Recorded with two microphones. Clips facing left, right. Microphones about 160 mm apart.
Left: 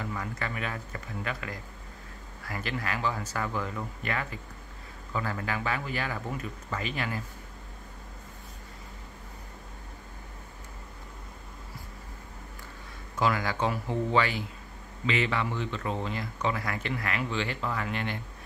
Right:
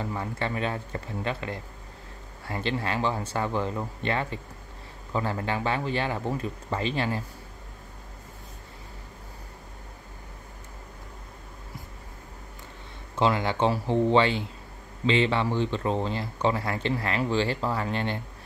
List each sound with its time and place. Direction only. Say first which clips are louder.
0.0 s speech: right 4 dB; 30° right (ahead or behind)
13.1 s speech: right 3 dB; 25° right (ahead or behind)